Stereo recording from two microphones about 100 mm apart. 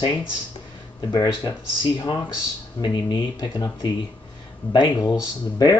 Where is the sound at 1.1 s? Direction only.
40° left (ahead or behind).